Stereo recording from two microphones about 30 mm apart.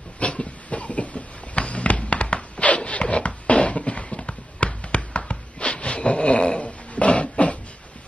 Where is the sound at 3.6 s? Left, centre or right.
Left.